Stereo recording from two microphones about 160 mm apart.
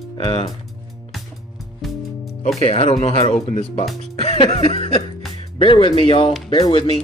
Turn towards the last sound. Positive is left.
turn(degrees=30)  # may be behind; listen again after turning